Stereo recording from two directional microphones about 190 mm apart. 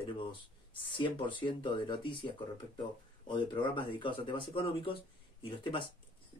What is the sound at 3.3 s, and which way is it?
Speech, 25° left (ahead or behind).